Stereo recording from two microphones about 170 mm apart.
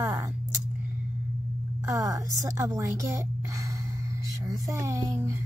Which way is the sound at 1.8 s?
20° right (ahead or behind).